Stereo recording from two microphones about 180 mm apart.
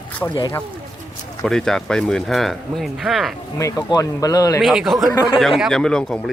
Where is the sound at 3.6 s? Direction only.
15° left (ahead or behind).